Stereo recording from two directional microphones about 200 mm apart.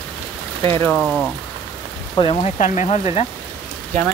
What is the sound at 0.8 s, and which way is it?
Speech, centre (ahead or behind).